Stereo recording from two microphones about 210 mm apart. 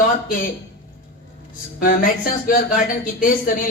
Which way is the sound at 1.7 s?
40° left (ahead or behind).